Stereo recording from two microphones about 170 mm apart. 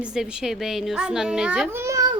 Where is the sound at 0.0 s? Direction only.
5° right (ahead or behind).